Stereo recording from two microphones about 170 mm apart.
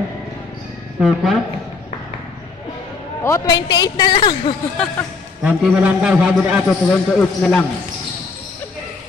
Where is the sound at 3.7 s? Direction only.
25° left (ahead or behind).